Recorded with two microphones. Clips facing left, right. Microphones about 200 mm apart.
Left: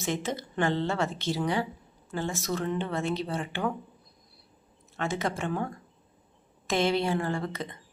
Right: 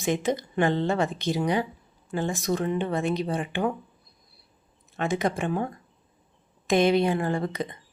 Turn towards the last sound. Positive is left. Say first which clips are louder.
# right 4 dB
turn(degrees=-15)  # may be behind; listen again after turning